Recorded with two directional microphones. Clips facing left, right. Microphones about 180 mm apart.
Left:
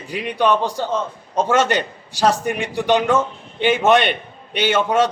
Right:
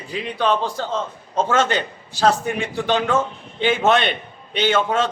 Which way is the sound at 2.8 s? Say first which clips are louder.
Left 3 dB; 15° left (ahead or behind).